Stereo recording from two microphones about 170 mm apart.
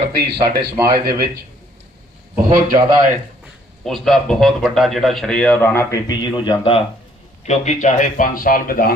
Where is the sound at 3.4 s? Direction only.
Centre (ahead or behind); by 6.8 s 30° left (ahead or behind).